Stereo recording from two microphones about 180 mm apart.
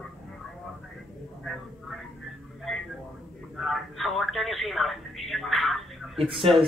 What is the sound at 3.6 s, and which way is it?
Telephone, centre (ahead or behind).